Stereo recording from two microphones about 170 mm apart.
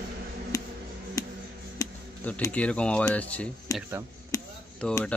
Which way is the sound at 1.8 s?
20° left (ahead or behind).